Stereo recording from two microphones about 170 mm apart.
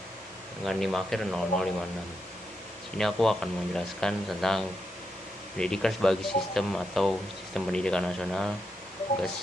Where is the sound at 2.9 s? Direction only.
5° left (ahead or behind).